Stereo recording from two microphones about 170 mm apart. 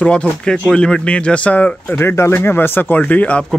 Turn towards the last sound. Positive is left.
turn(degrees=10)  # may be behind; listen again after turning